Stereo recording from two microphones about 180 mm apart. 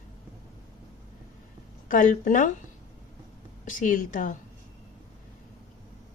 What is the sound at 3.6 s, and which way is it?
Speech, 45° left (ahead or behind).